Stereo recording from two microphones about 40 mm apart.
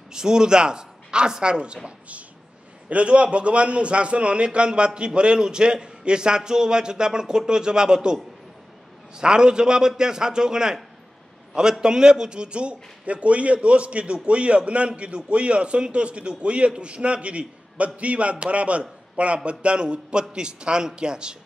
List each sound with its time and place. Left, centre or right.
0.1 s speech: centre
1.9 s a man's voice: right; by 10.8 s centre
11.8 s a man's voice: centre